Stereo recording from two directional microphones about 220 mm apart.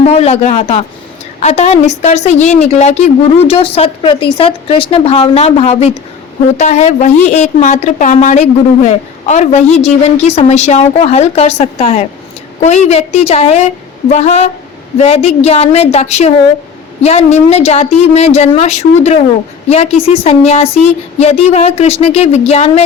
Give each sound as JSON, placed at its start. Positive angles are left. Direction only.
{"t": 0.0, "sound": "a woman's voice", "side_deg": 30}